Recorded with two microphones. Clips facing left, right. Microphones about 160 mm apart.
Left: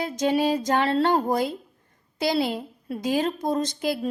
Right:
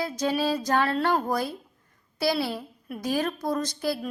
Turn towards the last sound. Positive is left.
turn(degrees=20)  # may be behind; listen again after turning